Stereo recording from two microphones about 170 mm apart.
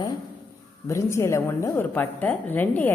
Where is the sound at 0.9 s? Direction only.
15° left (ahead or behind).